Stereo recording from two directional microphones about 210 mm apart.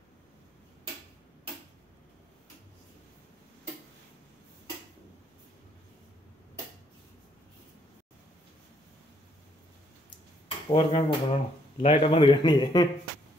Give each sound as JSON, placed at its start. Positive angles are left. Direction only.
{"t": 10.7, "sound": "speech", "side_deg": 25}